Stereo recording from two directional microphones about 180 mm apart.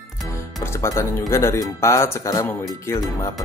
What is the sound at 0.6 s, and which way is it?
Speech, 15° left (ahead or behind).